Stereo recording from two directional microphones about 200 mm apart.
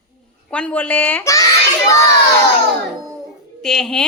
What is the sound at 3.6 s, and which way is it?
Speech, centre (ahead or behind).